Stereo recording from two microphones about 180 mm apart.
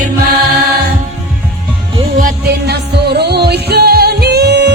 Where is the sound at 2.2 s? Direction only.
65° right (ahead or behind).